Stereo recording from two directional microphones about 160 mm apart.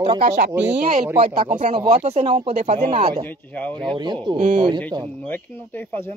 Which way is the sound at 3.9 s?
25° right (ahead or behind).